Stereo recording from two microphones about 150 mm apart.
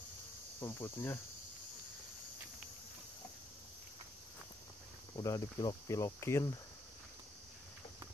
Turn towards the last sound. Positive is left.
turn(degrees=20)  # may be behind; listen again after turning